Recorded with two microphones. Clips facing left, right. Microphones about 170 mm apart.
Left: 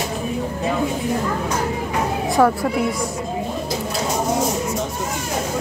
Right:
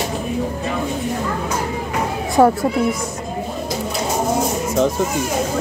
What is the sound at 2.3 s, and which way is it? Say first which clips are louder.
Speech: right 3 dB; 20° right (ahead or behind).